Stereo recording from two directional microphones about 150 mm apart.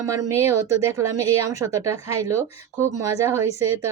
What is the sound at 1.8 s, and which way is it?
A woman's voice, 20° right (ahead or behind).